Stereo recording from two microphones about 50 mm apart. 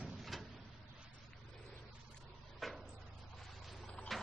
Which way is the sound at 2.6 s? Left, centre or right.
Centre.